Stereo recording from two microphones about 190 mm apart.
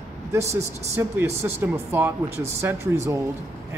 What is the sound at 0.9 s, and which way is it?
Speech, 15° right (ahead or behind).